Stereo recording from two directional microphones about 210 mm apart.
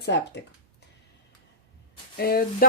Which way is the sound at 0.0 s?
55° left (ahead or behind).